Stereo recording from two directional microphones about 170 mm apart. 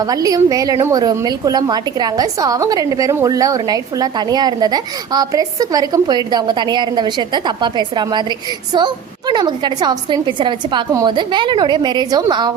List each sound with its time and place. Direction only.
0.0 s a woman's voice: 20° right (ahead or behind)